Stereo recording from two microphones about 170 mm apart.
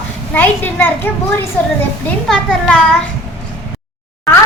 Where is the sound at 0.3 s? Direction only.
10° left (ahead or behind).